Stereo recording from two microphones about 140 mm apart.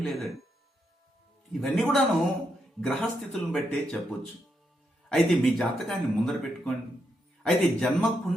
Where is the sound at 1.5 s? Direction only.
5° left (ahead or behind).